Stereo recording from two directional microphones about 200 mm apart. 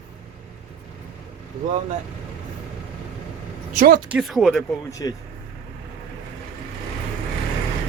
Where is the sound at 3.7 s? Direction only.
45° right (ahead or behind).